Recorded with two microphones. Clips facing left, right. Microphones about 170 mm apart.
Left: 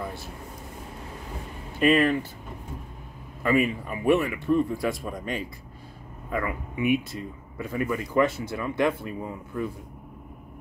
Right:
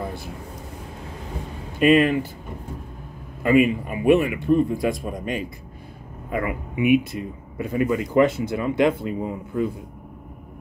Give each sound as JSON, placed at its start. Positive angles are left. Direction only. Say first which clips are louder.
{"t": 1.8, "sound": "speech", "louder": "right 4 dB", "side_deg": -20}
{"t": 3.4, "sound": "speech", "louder": "right 6 dB", "side_deg": -20}